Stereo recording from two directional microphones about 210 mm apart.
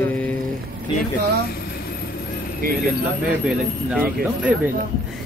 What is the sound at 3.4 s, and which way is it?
Speech, 5° right (ahead or behind).